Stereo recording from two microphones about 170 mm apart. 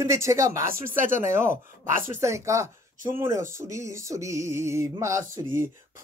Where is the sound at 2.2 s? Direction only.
15° right (ahead or behind).